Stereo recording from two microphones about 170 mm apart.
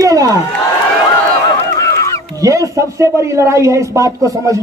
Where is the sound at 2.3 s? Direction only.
20° right (ahead or behind).